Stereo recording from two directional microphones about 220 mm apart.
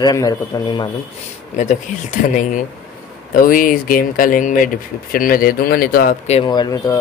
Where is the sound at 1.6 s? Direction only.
35° left (ahead or behind).